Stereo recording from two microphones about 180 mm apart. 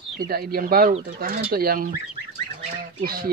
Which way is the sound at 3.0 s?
55° right (ahead or behind).